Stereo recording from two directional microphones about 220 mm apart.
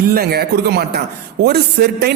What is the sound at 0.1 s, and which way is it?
A man's voice, 45° right (ahead or behind).